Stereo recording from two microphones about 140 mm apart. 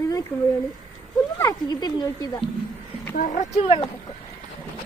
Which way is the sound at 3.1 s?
70° left (ahead or behind).